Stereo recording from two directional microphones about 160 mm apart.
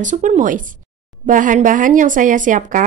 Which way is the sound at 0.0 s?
50° right (ahead or behind).